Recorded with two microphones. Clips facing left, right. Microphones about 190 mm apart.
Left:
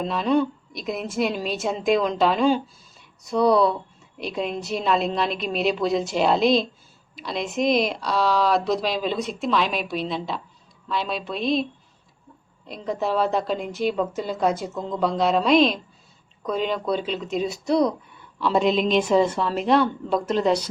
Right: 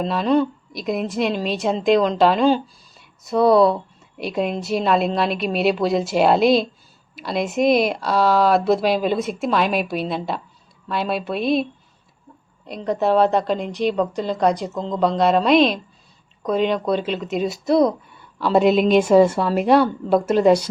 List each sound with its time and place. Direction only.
0.0 s a woman's voice: centre (ahead or behind)
8.2 s a woman's voice: 55° right (ahead or behind)
12.6 s a woman's voice: centre (ahead or behind)